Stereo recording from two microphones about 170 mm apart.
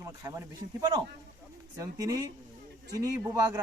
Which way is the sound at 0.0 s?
20° right (ahead or behind).